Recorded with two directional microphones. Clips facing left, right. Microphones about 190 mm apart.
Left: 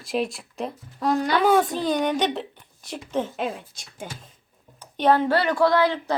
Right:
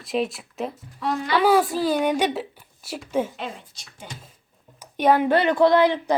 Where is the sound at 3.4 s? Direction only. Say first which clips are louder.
Left 5 dB; 50° left (ahead or behind).